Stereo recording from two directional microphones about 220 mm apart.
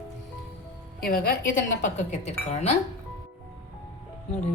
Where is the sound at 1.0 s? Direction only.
40° left (ahead or behind).